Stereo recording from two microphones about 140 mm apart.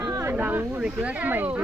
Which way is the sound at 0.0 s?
25° right (ahead or behind).